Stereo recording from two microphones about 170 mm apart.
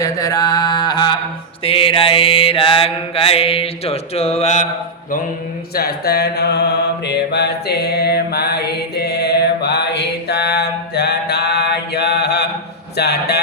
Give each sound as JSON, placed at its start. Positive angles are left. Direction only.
{"t": 0.0, "sound": "mantra", "side_deg": 20}
{"t": 5.7, "sound": "mantra", "side_deg": 70}
{"t": 13.0, "sound": "a sound", "side_deg": 75}